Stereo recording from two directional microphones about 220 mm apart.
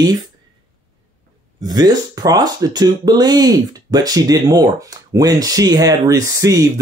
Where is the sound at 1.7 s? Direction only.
20° right (ahead or behind).